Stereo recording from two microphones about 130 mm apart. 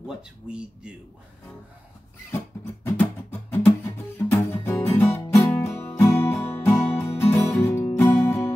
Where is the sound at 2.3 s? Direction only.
15° left (ahead or behind).